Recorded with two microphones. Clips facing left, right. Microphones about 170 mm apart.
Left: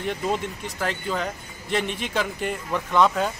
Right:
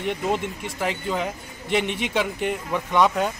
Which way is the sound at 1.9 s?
70° right (ahead or behind).